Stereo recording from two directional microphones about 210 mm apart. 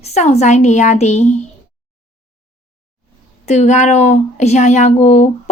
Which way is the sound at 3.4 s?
35° left (ahead or behind).